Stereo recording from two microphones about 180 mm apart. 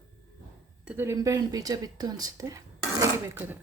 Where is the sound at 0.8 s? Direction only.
15° right (ahead or behind).